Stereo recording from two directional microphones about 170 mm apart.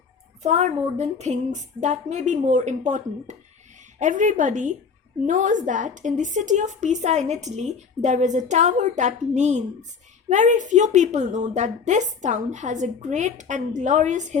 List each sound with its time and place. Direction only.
0.4 s a woman's voice: 40° right (ahead or behind)